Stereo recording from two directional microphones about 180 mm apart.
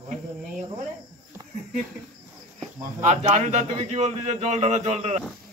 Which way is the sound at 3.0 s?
40° right (ahead or behind).